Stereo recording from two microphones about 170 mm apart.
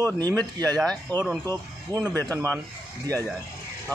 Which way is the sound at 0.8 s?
10° left (ahead or behind).